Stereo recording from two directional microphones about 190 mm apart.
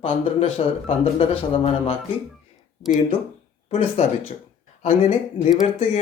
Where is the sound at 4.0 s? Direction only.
35° left (ahead or behind).